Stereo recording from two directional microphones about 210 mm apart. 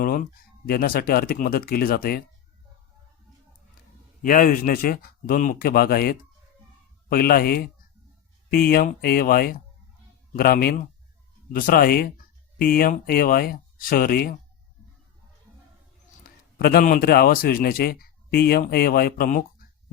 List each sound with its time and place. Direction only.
0.0 s speech: 40° left (ahead or behind)
4.2 s speech: 40° left (ahead or behind)
16.2 s a man's voice: 45° left (ahead or behind)